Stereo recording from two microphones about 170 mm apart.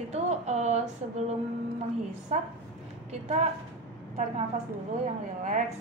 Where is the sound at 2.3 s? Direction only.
45° right (ahead or behind).